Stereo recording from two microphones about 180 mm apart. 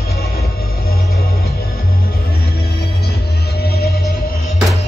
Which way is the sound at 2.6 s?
60° left (ahead or behind).